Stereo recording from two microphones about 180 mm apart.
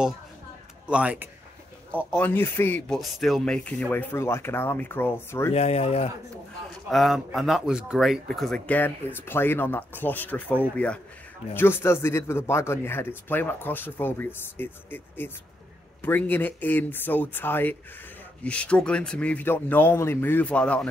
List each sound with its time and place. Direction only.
0.8 s speech: 5° right (ahead or behind)
2.0 s speech: 10° left (ahead or behind)
3.0 s speech: centre (ahead or behind)
5.5 s speech: 35° left (ahead or behind)
6.9 s speech: centre (ahead or behind)